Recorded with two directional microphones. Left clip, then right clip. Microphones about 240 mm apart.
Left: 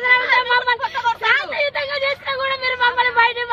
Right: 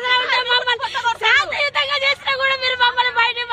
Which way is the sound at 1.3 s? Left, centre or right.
Centre.